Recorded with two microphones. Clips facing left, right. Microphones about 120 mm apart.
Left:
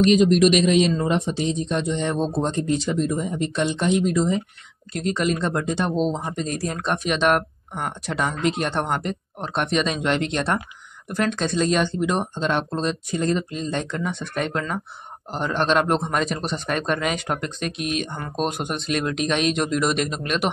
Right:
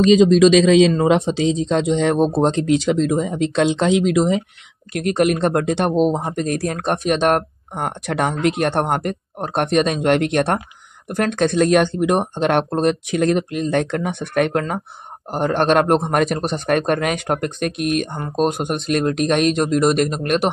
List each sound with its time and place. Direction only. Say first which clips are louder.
0.2 s a man's voice: right 5 dB; 90° right
4.9 s speech: right 6 dB; 65° right (ahead or behind)
6.0 s speech: right 6 dB; 50° right (ahead or behind)
7.0 s speech: right 3 dB; 45° right (ahead or behind)